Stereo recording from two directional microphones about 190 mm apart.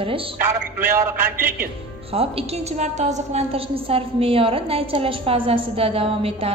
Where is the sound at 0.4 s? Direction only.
10° right (ahead or behind).